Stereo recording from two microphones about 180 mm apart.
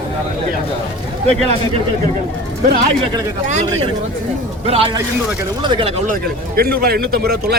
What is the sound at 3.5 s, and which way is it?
Speech, 40° right (ahead or behind).